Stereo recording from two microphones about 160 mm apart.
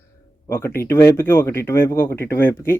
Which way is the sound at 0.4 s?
15° left (ahead or behind).